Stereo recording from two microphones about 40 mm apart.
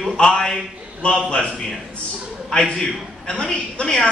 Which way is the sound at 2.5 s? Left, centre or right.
Centre.